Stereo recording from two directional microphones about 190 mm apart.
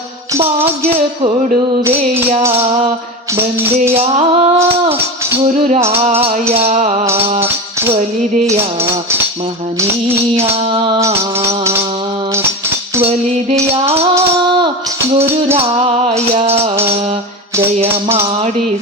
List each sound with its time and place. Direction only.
3.9 s music: 35° right (ahead or behind)
10.8 s music: 25° right (ahead or behind)
11.4 s music: 15° right (ahead or behind)
13.1 s music: 30° right (ahead or behind)
15.2 s music: 10° right (ahead or behind)
15.5 s music: 35° right (ahead or behind)